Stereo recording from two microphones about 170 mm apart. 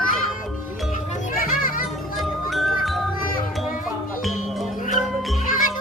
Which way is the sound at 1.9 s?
Centre (ahead or behind).